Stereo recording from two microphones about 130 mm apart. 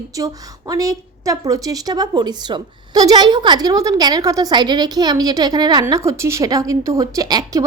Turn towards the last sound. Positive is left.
turn(degrees=-30)  # may be behind; listen again after turning